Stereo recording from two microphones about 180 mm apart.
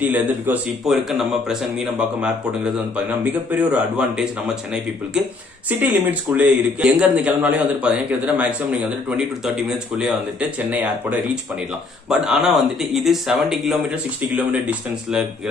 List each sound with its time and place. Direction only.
0.0 s a man's voice: 10° right (ahead or behind)
5.7 s a man's voice: 10° right (ahead or behind)